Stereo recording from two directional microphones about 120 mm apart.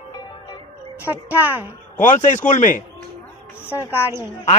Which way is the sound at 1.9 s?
90° left.